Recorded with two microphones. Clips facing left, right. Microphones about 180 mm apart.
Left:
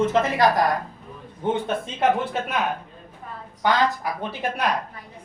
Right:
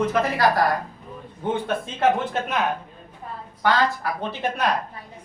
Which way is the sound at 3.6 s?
15° left (ahead or behind).